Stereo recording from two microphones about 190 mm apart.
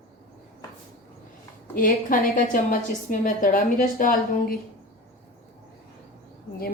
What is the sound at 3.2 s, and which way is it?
A woman's voice, 45° left (ahead or behind).